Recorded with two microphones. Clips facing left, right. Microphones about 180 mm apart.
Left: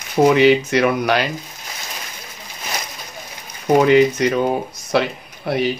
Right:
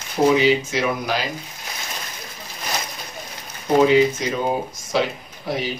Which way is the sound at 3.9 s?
65° left (ahead or behind).